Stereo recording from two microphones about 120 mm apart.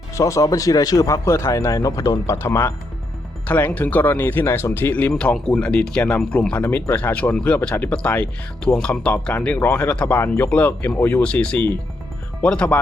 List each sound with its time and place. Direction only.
0.1 s speech: 30° left (ahead or behind); by 12.8 s 10° left (ahead or behind)